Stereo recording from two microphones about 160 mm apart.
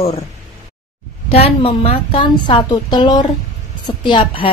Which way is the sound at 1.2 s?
35° left (ahead or behind).